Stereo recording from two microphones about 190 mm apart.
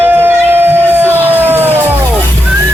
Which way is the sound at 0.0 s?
10° right (ahead or behind).